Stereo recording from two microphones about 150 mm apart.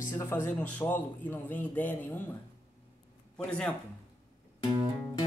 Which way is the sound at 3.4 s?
5° left (ahead or behind).